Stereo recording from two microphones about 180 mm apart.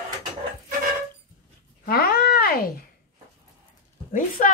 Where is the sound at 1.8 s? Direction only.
60° left (ahead or behind).